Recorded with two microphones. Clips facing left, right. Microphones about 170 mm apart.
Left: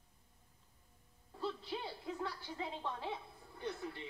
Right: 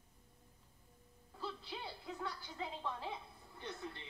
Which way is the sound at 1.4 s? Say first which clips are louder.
Left 5 dB; centre (ahead or behind).